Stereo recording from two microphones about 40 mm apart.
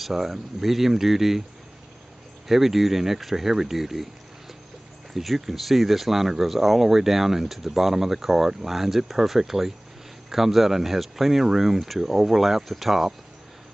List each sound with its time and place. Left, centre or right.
0.0 s speech: centre
2.4 s speech: centre
5.1 s speech: centre